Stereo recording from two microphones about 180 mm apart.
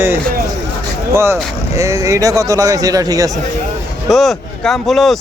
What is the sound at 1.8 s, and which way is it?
Speech, 15° right (ahead or behind).